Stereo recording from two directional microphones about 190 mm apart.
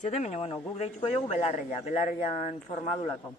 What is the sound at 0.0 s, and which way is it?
Speech, 35° left (ahead or behind).